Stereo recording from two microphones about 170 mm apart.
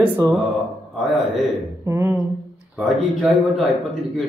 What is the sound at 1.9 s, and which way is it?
Speech, 15° right (ahead or behind).